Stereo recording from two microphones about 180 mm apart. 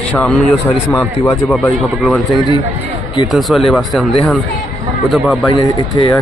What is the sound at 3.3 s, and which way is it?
Speech, centre (ahead or behind).